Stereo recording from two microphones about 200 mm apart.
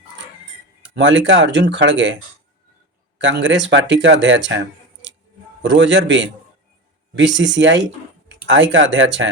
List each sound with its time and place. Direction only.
0.9 s speech: 65° right (ahead or behind)
3.2 s speech: 65° right (ahead or behind)